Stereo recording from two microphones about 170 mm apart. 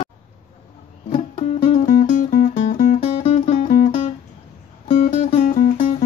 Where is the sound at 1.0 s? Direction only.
45° left (ahead or behind).